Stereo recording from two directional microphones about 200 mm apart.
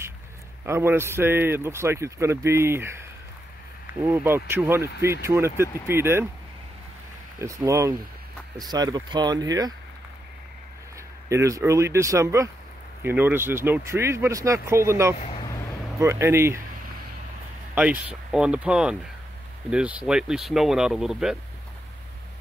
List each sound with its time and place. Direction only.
0.7 s speech: 10° right (ahead or behind)
4.0 s speech: 10° right (ahead or behind)
7.3 s speech: 15° right (ahead or behind)
11.2 s speech: 15° right (ahead or behind)
15.2 s vehicle: 25° left (ahead or behind)
16.0 s speech: 15° right (ahead or behind)
17.7 s speech: 5° right (ahead or behind)